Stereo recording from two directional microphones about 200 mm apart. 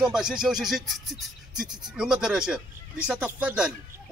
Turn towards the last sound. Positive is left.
turn(degrees=-5)  # may be behind; listen again after turning